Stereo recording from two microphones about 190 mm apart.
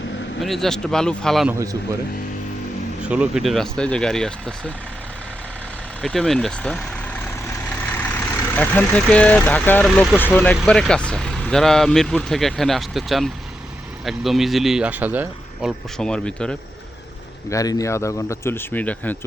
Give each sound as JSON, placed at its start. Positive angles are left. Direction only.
{"t": 0.4, "sound": "speech", "side_deg": 0}
{"t": 1.5, "sound": "a man's voice", "side_deg": -15}
{"t": 3.0, "sound": "speech", "side_deg": -5}
{"t": 6.0, "sound": "speech", "side_deg": 0}
{"t": 16.0, "sound": "speech", "side_deg": 5}
{"t": 17.5, "sound": "speech", "side_deg": 20}